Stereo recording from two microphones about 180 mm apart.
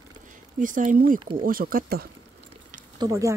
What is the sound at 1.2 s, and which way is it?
Speech, 30° right (ahead or behind).